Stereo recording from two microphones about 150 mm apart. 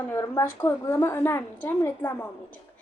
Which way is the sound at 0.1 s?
20° left (ahead or behind).